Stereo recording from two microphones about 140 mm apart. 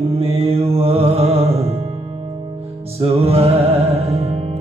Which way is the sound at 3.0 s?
45° right (ahead or behind).